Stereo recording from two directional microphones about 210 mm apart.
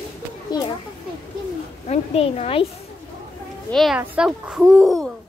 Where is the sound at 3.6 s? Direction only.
Centre (ahead or behind).